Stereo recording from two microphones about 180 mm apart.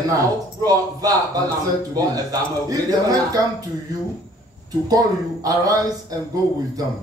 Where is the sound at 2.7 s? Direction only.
20° right (ahead or behind).